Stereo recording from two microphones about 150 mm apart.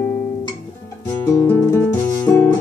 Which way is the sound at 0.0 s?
10° left (ahead or behind).